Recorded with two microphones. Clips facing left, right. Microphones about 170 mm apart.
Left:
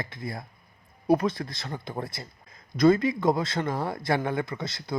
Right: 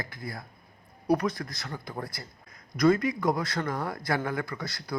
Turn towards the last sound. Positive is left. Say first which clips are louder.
# left 2 dB
turn(degrees=25)  # may be behind; listen again after turning